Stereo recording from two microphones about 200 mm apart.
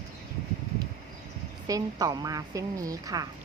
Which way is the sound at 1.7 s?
15° right (ahead or behind).